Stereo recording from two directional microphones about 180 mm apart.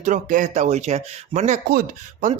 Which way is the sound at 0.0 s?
45° right (ahead or behind).